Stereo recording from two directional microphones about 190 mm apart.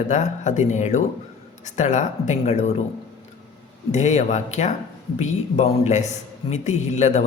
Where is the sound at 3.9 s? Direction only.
35° left (ahead or behind).